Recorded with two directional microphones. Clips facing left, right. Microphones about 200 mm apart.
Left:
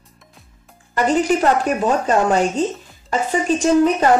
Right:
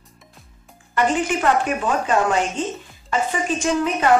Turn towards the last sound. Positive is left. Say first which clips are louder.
# left 6 dB
turn(degrees=40)  # may be behind; listen again after turning